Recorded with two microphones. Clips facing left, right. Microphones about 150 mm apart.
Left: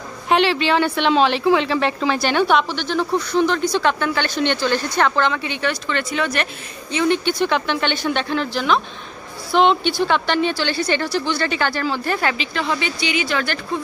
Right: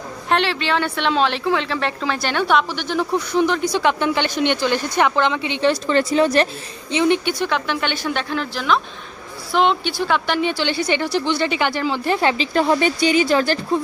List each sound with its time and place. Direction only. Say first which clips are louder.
0.3 s speech: left 3 dB; 5° left (ahead or behind)
2.8 s speech: even; 10° right (ahead or behind)
5.7 s speech: right 7 dB; 35° right (ahead or behind)
6.9 s speech: right 1 dB; 20° right (ahead or behind)
7.2 s speech: left 2 dB; 5° right (ahead or behind); by 12.4 s 25° right (ahead or behind)
12.5 s speech: right 6 dB; 45° right (ahead or behind)